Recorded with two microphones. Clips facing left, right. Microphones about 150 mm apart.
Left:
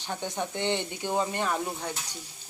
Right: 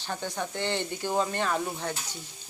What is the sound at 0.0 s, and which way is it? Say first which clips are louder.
Speech: left 1 dB; 20° left (ahead or behind).